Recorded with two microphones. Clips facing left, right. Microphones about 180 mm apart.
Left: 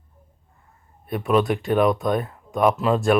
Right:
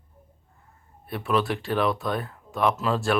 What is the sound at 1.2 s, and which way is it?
Speech, 20° left (ahead or behind).